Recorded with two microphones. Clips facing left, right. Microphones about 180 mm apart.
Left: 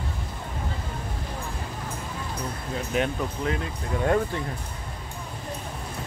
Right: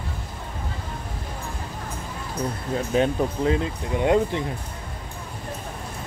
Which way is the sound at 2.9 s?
30° right (ahead or behind).